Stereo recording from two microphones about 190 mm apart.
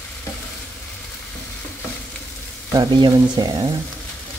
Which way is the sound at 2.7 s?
20° right (ahead or behind).